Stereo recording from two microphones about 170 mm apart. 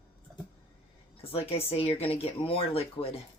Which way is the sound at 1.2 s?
35° left (ahead or behind).